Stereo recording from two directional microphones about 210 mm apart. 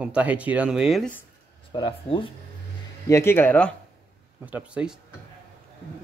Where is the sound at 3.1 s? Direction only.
10° left (ahead or behind).